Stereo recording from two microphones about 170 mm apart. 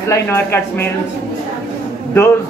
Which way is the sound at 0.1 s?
15° left (ahead or behind).